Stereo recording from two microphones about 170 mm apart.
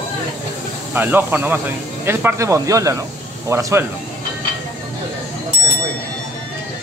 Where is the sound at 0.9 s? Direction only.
10° right (ahead or behind).